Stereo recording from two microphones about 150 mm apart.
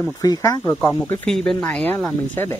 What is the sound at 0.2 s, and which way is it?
Speech, 25° left (ahead or behind).